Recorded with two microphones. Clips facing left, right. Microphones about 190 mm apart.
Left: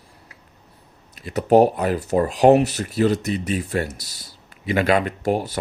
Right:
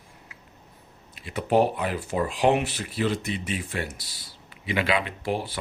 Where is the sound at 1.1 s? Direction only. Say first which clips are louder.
Left 7 dB; 40° left (ahead or behind).